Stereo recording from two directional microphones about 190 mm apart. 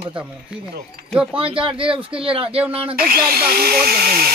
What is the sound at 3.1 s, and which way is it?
Speech, 55° right (ahead or behind).